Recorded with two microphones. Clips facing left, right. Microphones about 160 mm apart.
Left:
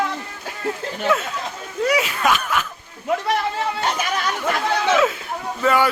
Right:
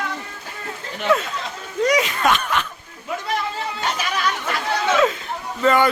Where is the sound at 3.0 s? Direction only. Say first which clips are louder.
Left 4 dB; 65° left (ahead or behind).